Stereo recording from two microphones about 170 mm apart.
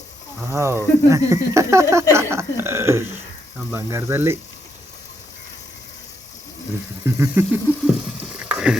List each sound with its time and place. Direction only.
0.4 s speech: 15° right (ahead or behind)
7.0 s speech: 15° right (ahead or behind)
8.4 s rowboat: 5° right (ahead or behind)